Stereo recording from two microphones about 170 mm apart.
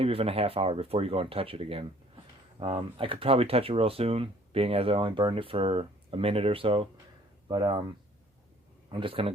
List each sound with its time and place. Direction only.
0.0 s speech: 35° right (ahead or behind)
8.9 s speech: 30° right (ahead or behind)